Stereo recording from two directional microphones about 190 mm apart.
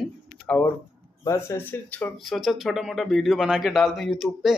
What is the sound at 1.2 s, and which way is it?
Speech, 15° left (ahead or behind).